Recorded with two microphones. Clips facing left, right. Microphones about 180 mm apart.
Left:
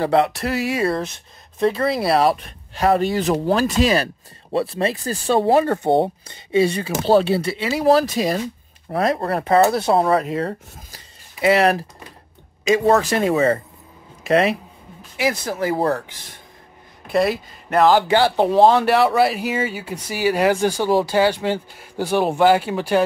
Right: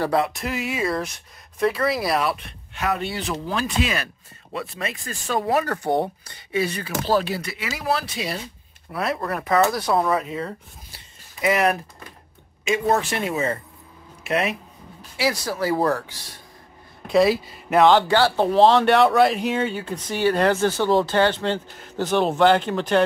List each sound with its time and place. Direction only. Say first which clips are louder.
0.5 s speech: left 5 dB; 40° left (ahead or behind)
1.6 s speech: left 3 dB; 25° left (ahead or behind)
10.2 s speech: left 6 dB; 75° left (ahead or behind)
11.4 s speech: left 4 dB; 30° left (ahead or behind)
13.0 s speech: left 7 dB; 40° left (ahead or behind)
15.1 s speech: left 2 dB; 20° left (ahead or behind)
17.1 s speech: right 1 dB; centre (ahead or behind)
18.0 s speech: left 2 dB; 15° left (ahead or behind)
18.7 s speech: even; 5° left (ahead or behind)